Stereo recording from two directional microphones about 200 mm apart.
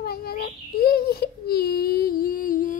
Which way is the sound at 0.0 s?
50° left (ahead or behind).